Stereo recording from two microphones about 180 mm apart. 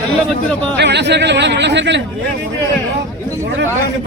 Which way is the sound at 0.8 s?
70° right (ahead or behind).